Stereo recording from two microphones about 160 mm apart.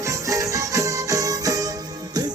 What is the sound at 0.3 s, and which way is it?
Music, 20° right (ahead or behind).